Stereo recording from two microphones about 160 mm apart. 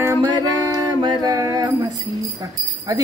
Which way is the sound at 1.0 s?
25° right (ahead or behind).